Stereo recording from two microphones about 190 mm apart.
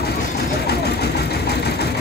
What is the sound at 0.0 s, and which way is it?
Vehicle, 55° left (ahead or behind).